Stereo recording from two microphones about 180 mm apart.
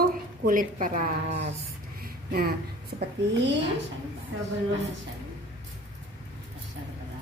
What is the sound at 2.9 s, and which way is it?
Speech, 40° right (ahead or behind).